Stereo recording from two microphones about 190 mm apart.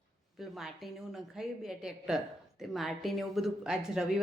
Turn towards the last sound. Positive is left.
turn(degrees=-5)  # may be behind; listen again after turning